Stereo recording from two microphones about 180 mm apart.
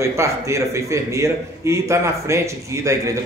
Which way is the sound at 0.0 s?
15° right (ahead or behind).